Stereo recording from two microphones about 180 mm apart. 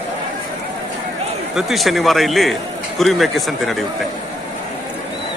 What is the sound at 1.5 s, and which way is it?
A man's voice, centre (ahead or behind).